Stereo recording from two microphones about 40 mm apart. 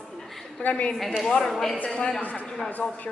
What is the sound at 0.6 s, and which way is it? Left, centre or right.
Speech, left.